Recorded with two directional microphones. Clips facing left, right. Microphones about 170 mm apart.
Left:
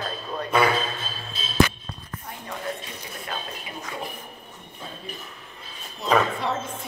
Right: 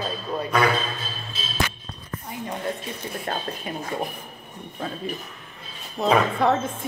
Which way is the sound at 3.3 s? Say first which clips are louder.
Right 4 dB; 45° right (ahead or behind).